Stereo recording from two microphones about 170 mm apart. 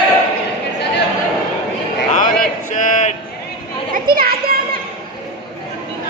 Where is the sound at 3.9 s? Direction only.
60° right (ahead or behind).